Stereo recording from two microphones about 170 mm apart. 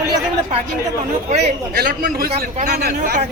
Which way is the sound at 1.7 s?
60° right (ahead or behind).